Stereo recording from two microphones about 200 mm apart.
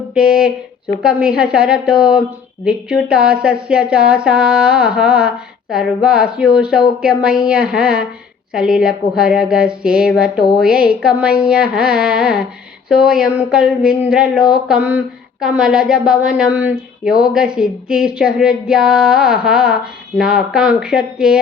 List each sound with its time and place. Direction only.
0.1 s speech: 5° right (ahead or behind)